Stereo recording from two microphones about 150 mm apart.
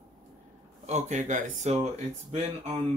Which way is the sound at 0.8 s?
50° right (ahead or behind).